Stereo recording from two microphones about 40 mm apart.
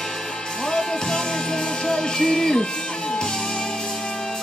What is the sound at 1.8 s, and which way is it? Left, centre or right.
Music, centre.